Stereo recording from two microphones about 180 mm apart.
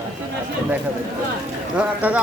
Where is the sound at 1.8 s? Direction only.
10° right (ahead or behind).